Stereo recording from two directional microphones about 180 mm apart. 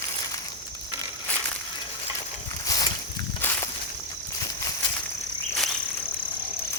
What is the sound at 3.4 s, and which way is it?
Walk, 10° left (ahead or behind).